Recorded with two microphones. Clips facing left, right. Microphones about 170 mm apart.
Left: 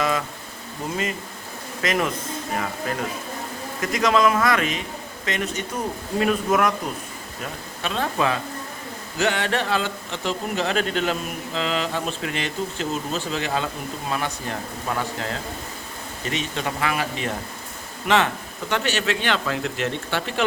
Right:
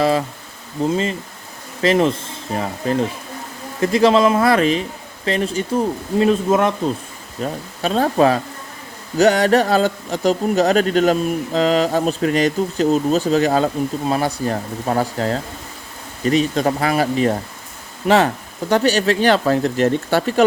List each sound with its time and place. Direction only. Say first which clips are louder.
0.0 s speech: right 7 dB; 35° right (ahead or behind)
7.4 s speech: right 9 dB; 40° right (ahead or behind)